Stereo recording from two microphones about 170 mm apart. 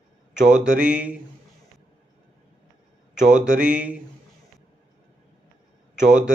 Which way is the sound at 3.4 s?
5° right (ahead or behind).